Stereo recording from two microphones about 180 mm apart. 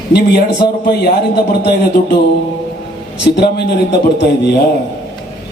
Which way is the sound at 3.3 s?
65° left (ahead or behind).